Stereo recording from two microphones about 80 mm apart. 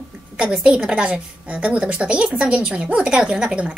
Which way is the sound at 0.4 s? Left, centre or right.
Centre.